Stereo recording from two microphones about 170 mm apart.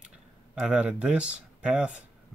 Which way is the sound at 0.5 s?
5° right (ahead or behind).